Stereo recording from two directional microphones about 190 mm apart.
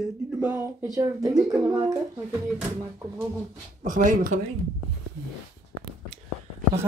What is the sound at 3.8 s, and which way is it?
Speech, 45° right (ahead or behind).